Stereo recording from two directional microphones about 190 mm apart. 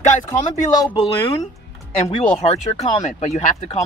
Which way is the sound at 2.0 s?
35° left (ahead or behind).